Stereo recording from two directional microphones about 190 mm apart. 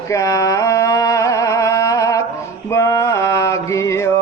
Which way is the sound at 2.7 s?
15° left (ahead or behind).